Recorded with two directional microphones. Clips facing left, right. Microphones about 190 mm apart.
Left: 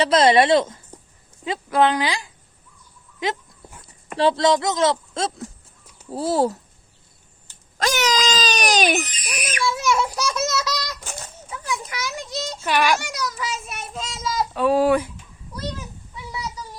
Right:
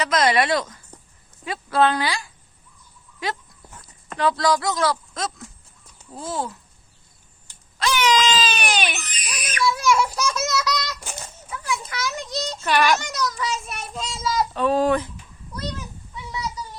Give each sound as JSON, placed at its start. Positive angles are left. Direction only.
{"t": 0.0, "sound": "a child's voice", "side_deg": 30}
{"t": 3.2, "sound": "dog", "side_deg": 20}
{"t": 4.2, "sound": "speech", "side_deg": 25}
{"t": 6.1, "sound": "crying", "side_deg": 35}
{"t": 7.8, "sound": "crying", "side_deg": 45}
{"t": 9.0, "sound": "a child's voice", "side_deg": 25}